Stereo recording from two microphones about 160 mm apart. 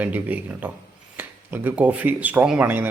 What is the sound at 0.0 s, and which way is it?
Speech, 10° right (ahead or behind).